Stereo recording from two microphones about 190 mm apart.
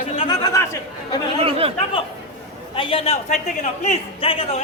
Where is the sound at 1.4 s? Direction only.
30° right (ahead or behind).